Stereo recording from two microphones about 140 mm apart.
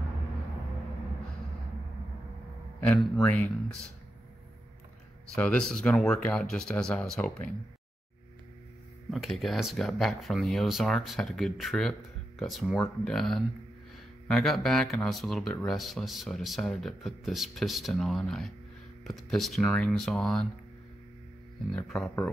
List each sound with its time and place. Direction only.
3.2 s speech: 5° left (ahead or behind)
5.4 s speech: 5° left (ahead or behind)
9.1 s speech: centre (ahead or behind)
21.7 s speech: centre (ahead or behind)